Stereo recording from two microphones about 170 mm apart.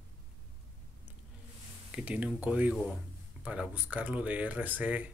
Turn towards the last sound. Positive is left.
turn(degrees=-10)  # may be behind; listen again after turning